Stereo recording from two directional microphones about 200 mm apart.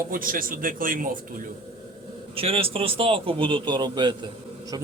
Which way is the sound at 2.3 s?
30° right (ahead or behind).